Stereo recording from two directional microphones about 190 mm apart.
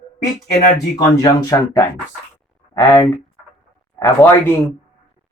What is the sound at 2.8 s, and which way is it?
Speech, 15° left (ahead or behind).